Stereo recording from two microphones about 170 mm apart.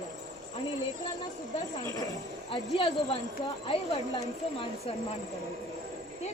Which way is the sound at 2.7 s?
40° left (ahead or behind).